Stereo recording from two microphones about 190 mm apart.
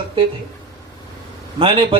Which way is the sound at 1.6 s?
30° right (ahead or behind).